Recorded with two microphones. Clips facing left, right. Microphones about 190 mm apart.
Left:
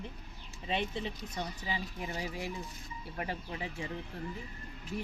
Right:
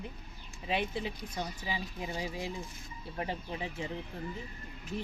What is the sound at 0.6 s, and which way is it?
Speech, 10° right (ahead or behind).